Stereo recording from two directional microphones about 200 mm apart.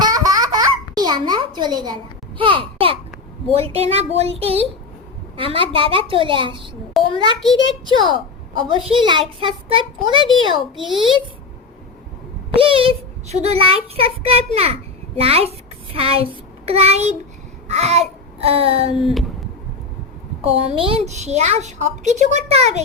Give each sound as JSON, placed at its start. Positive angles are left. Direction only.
{"t": 0.0, "sound": "a sound", "side_deg": -20}
{"t": 2.4, "sound": "babbling", "side_deg": -25}
{"t": 3.5, "sound": "a woman's voice", "side_deg": -30}
{"t": 7.0, "sound": "a sound", "side_deg": 0}
{"t": 8.5, "sound": "a child's voice", "side_deg": -25}
{"t": 10.8, "sound": "a child's voice", "side_deg": 0}
{"t": 12.5, "sound": "a child's voice", "side_deg": -25}
{"t": 16.0, "sound": "child singing", "side_deg": -30}
{"t": 17.7, "sound": "a woman's voice", "side_deg": -30}
{"t": 18.9, "sound": "a child's voice", "side_deg": 0}
{"t": 20.4, "sound": "a woman's voice", "side_deg": -30}